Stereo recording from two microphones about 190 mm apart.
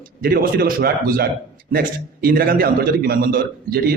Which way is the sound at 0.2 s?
55° right (ahead or behind).